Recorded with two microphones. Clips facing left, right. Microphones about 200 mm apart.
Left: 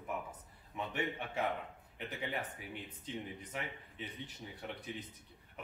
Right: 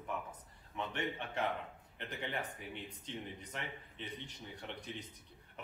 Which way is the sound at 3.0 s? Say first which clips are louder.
Left 4 dB; 5° left (ahead or behind).